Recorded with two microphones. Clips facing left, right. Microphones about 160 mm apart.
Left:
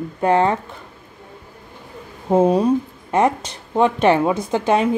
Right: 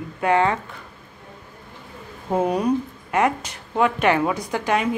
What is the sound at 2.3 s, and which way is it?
A woman's voice, 25° left (ahead or behind).